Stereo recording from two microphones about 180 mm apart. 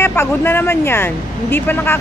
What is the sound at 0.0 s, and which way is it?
Speech, 10° left (ahead or behind).